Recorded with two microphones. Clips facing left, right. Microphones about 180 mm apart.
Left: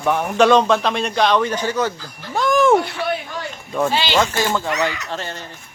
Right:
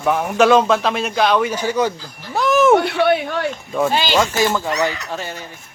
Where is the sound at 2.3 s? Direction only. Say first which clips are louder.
Right 1 dB; 5° right (ahead or behind).